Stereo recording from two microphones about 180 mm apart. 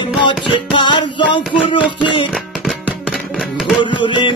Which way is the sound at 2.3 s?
Centre (ahead or behind).